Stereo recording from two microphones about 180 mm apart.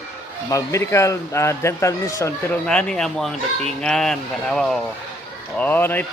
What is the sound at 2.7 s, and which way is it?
Speech, 5° left (ahead or behind).